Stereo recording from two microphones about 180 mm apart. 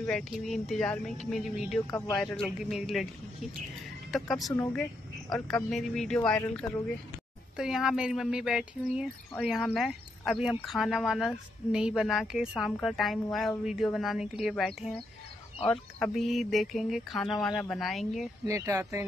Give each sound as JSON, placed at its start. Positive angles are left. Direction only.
{"t": 0.0, "sound": "speech", "side_deg": 5}
{"t": 1.9, "sound": "speech", "side_deg": 15}
{"t": 2.1, "sound": "speech", "side_deg": 0}
{"t": 4.1, "sound": "speech", "side_deg": 0}
{"t": 5.7, "sound": "speech", "side_deg": 0}
{"t": 18.5, "sound": "speech", "side_deg": -15}